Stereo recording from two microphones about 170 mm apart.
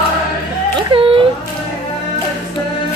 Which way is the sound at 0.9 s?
30° right (ahead or behind).